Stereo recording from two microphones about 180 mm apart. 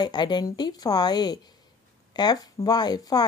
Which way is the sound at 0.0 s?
25° left (ahead or behind).